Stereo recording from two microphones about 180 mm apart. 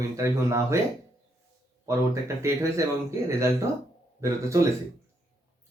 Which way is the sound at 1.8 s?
15° right (ahead or behind).